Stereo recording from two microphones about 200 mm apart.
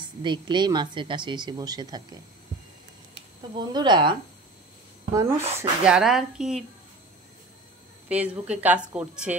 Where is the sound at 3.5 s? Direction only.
20° right (ahead or behind).